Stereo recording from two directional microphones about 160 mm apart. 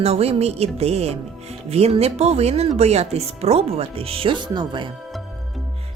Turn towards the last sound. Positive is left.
turn(degrees=-30)  # may be behind; listen again after turning